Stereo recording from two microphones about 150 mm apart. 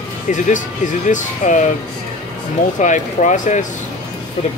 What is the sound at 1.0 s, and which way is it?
Speech, 55° left (ahead or behind).